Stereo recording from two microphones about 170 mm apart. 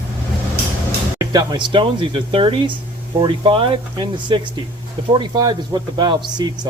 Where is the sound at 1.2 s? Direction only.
20° right (ahead or behind).